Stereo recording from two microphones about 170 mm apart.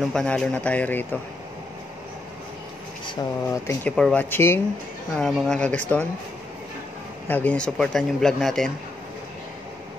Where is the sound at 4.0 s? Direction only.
5° left (ahead or behind).